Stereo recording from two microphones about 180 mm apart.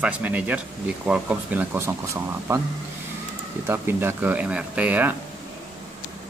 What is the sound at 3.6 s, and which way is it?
Speech, 10° right (ahead or behind).